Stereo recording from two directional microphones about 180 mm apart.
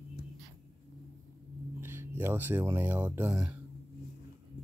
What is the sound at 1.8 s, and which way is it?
Speech, 10° right (ahead or behind).